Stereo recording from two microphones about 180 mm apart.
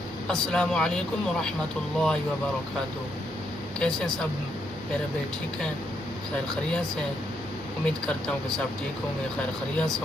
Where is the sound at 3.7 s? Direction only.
5° left (ahead or behind).